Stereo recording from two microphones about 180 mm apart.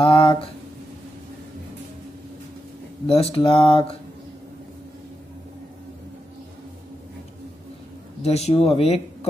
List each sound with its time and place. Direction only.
0.0 s a sound: 25° left (ahead or behind)
3.1 s speech: 35° left (ahead or behind)
8.2 s speech: 35° left (ahead or behind)